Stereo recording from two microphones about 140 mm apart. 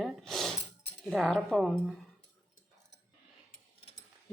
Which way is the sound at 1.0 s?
Centre (ahead or behind).